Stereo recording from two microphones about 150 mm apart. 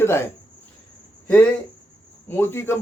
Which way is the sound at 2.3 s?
15° left (ahead or behind).